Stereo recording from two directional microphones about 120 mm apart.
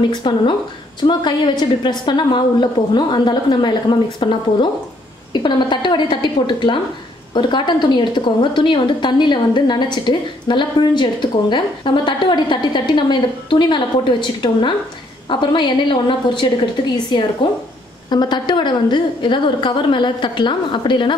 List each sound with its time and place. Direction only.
0.1 s a woman's voice: 40° left (ahead or behind)
18.1 s a woman's voice: 35° left (ahead or behind)